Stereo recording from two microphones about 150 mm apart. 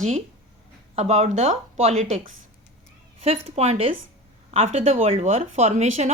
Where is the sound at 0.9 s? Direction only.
50° right (ahead or behind).